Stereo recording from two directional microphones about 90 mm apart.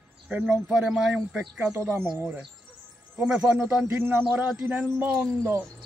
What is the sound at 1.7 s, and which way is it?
Speech, 30° right (ahead or behind).